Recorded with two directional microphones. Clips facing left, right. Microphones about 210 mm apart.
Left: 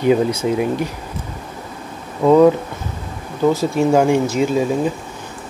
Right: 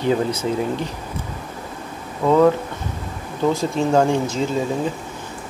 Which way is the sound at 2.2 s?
15° left (ahead or behind).